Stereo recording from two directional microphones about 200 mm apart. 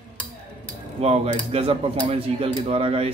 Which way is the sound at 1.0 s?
30° right (ahead or behind).